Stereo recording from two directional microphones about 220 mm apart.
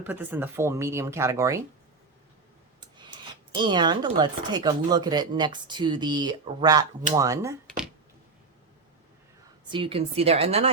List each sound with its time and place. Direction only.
0.0 s speech: 10° right (ahead or behind)
3.6 s speech: 20° right (ahead or behind)
9.6 s speech: 20° right (ahead or behind)